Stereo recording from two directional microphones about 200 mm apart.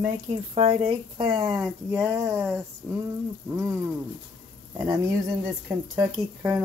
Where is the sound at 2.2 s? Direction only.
15° right (ahead or behind).